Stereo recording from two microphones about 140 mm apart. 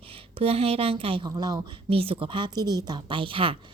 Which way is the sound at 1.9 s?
40° right (ahead or behind).